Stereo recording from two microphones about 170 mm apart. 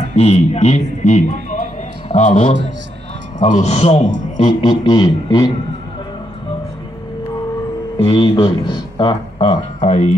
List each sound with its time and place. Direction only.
0.1 s a man's voice: 40° left (ahead or behind)
4.6 s speech: 25° left (ahead or behind)
8.0 s speech: 30° left (ahead or behind)
9.8 s speech: 40° left (ahead or behind)